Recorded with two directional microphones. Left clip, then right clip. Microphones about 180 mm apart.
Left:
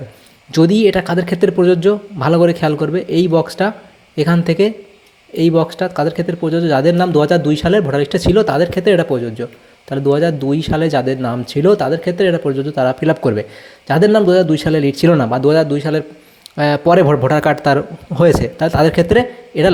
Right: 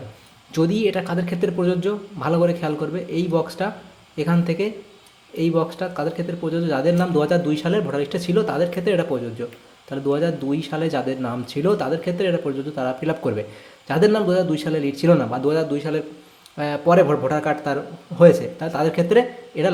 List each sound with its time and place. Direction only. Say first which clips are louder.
0.5 s speech: left 9 dB; 35° left (ahead or behind)